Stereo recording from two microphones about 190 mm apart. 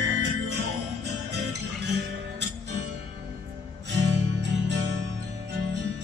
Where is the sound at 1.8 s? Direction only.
65° right (ahead or behind).